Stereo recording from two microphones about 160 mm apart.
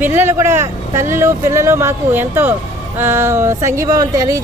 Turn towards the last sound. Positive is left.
turn(degrees=-20)  # may be behind; listen again after turning